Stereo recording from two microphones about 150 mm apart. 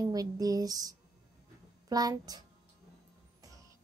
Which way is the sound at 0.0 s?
25° right (ahead or behind).